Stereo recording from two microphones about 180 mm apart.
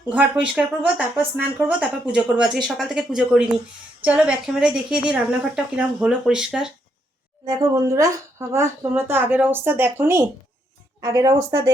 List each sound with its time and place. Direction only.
0.1 s speech: 5° right (ahead or behind)
7.4 s speech: 20° right (ahead or behind)